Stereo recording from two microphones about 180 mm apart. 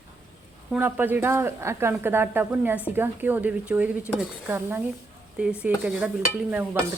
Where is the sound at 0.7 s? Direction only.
10° right (ahead or behind).